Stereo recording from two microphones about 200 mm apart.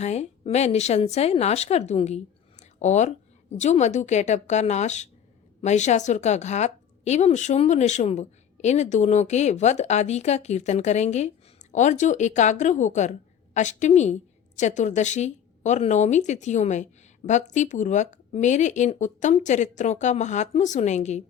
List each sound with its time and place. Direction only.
0.0 s a woman's voice: 35° left (ahead or behind)